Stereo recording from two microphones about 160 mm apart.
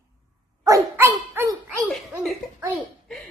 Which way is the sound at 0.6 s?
20° right (ahead or behind).